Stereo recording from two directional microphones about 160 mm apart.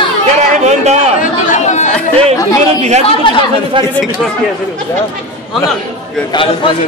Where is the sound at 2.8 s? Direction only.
45° right (ahead or behind).